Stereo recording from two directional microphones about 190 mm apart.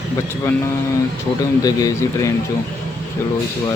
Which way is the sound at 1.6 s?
20° left (ahead or behind).